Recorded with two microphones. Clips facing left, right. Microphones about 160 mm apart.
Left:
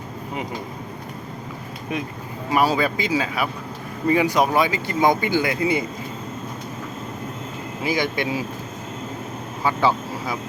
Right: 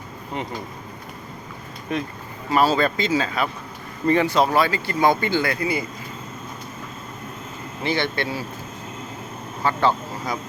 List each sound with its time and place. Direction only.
1.9 s speech: 10° left (ahead or behind)
7.8 s speech: 10° left (ahead or behind)
9.6 s speech: 10° left (ahead or behind)